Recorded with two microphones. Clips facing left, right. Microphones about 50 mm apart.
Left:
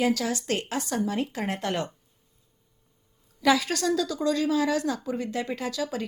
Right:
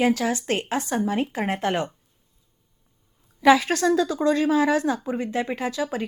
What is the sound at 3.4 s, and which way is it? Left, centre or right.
Speech, right.